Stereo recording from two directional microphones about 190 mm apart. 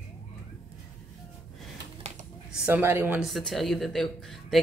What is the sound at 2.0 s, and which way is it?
Typing, 35° right (ahead or behind).